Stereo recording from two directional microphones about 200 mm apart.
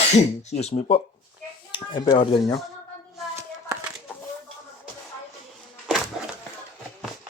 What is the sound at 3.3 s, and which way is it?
Hands, 15° right (ahead or behind).